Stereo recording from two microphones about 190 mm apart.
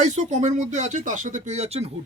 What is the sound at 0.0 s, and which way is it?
Speech, 40° right (ahead or behind).